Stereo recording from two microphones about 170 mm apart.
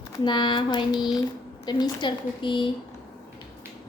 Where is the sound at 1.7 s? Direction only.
25° left (ahead or behind).